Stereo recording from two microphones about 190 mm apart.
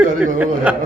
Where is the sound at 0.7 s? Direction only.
5° right (ahead or behind).